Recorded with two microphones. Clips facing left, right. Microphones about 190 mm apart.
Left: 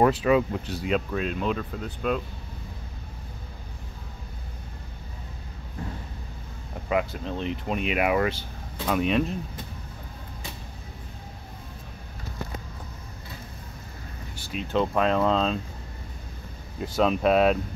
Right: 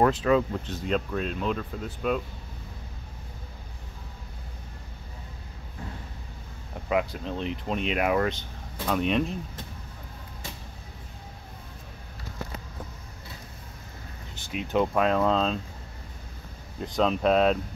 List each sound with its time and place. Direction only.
0.0 s speech: 10° left (ahead or behind)
6.9 s speech: centre (ahead or behind)
14.5 s speech: 15° right (ahead or behind)
16.8 s speech: 5° left (ahead or behind)